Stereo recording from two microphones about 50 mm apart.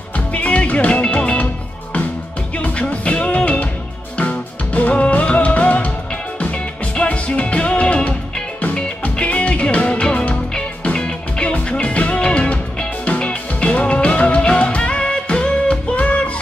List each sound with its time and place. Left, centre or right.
0.3 s music: left
2.5 s music: left